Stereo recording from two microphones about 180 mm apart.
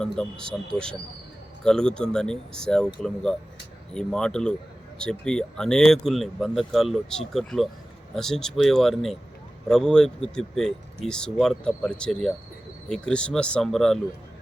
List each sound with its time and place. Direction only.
0.0 s speech: 5° left (ahead or behind)